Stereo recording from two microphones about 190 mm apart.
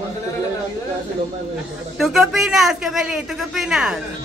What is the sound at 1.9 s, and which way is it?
A man's voice, centre (ahead or behind).